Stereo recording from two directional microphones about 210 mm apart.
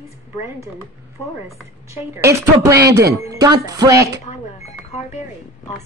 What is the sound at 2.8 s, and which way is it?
Speech, 50° right (ahead or behind).